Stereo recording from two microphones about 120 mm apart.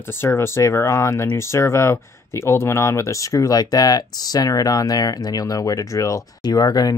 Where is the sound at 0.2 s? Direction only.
20° left (ahead or behind).